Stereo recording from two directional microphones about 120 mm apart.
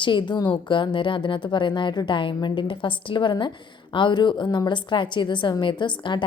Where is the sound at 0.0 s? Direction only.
40° left (ahead or behind).